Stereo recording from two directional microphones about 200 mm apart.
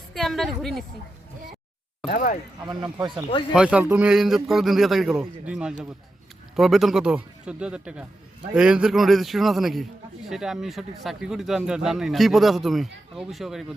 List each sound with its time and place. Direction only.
0.1 s speech: centre (ahead or behind)
2.0 s speech: 40° left (ahead or behind)
2.6 s speech: 20° right (ahead or behind)
3.5 s speech: 5° right (ahead or behind)